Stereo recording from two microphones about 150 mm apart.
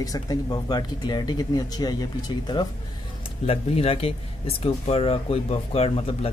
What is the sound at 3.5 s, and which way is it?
Speech, 40° left (ahead or behind).